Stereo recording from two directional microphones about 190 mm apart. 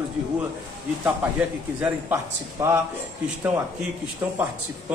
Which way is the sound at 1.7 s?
10° right (ahead or behind).